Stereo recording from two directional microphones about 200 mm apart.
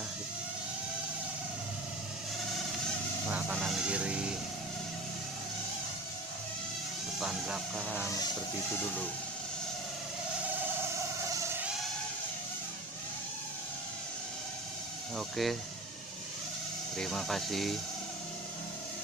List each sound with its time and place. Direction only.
3.3 s goose: 5° right (ahead or behind)
7.2 s speech: centre (ahead or behind)
15.1 s speech: centre (ahead or behind)
16.9 s speech: centre (ahead or behind)